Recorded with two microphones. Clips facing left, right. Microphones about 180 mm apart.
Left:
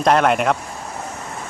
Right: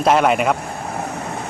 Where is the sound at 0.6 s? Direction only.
60° right (ahead or behind).